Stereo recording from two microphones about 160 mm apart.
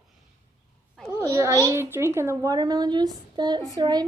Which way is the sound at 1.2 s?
20° right (ahead or behind).